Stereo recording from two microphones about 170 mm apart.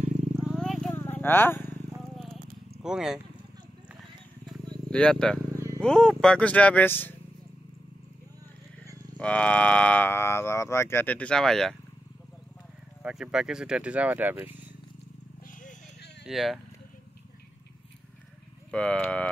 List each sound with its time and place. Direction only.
0.4 s a sound: centre (ahead or behind)
2.8 s speech: 5° right (ahead or behind)
4.9 s speech: 5° left (ahead or behind)
9.2 s speech: 5° left (ahead or behind)
13.0 s speech: 5° right (ahead or behind)
16.3 s speech: centre (ahead or behind)
18.7 s speech: 5° left (ahead or behind)